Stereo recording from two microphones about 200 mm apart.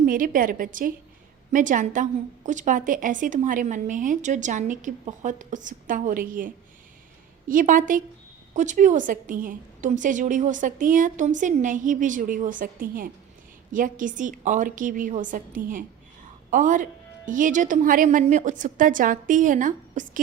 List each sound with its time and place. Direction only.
0.0 s a woman's voice: 45° right (ahead or behind)